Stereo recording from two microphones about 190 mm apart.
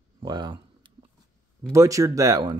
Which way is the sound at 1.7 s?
15° right (ahead or behind).